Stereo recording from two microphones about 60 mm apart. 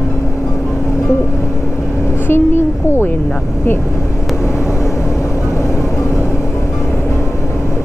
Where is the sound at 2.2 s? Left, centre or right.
Left.